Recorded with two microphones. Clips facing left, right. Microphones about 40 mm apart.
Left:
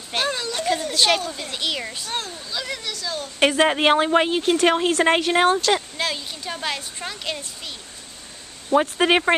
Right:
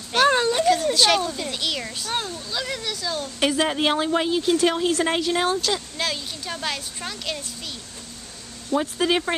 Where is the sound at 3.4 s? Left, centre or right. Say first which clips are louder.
Left 4 dB; left.